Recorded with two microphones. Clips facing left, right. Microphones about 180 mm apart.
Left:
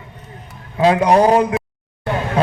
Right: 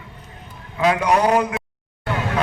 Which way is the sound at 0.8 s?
30° left (ahead or behind).